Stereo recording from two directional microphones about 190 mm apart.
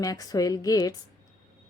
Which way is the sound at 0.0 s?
20° left (ahead or behind).